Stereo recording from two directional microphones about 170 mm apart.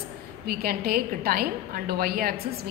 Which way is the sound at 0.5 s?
60° right (ahead or behind).